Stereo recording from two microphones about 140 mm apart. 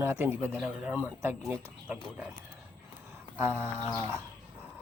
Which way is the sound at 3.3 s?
15° right (ahead or behind).